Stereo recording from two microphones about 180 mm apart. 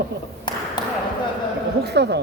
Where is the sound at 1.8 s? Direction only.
70° right (ahead or behind).